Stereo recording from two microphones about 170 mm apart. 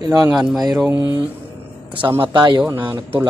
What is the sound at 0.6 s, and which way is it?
Speech, 20° right (ahead or behind).